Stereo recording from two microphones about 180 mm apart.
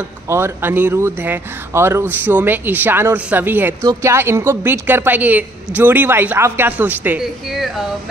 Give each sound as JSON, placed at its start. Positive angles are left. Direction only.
{"t": 0.3, "sound": "speech", "side_deg": -10}